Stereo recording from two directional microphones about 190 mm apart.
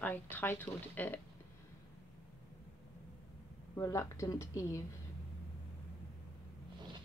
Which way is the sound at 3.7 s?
15° left (ahead or behind).